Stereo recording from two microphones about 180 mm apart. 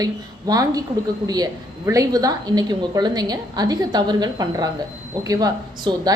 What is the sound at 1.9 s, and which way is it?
A woman's voice, 20° right (ahead or behind).